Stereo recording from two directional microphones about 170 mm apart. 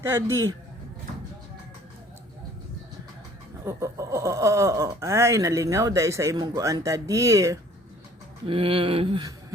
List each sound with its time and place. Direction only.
0.0 s a man's voice: 15° right (ahead or behind)
3.6 s speech: 15° right (ahead or behind)
8.4 s a sound: 30° right (ahead or behind)